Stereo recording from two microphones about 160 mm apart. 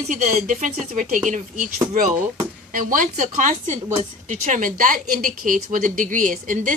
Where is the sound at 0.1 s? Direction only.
50° right (ahead or behind).